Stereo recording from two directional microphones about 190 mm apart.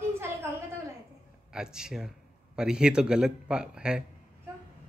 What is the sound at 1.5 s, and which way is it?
Speech, 5° right (ahead or behind).